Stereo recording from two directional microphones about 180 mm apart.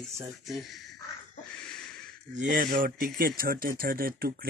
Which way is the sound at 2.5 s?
50° right (ahead or behind).